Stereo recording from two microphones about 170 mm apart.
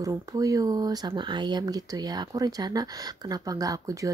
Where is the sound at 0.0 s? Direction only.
20° right (ahead or behind).